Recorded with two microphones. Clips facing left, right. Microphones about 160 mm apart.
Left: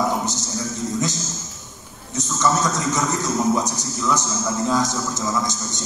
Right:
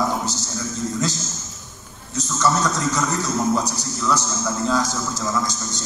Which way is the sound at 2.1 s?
20° left (ahead or behind).